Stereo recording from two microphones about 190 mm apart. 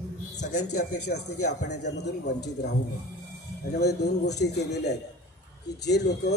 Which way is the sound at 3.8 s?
60° left (ahead or behind).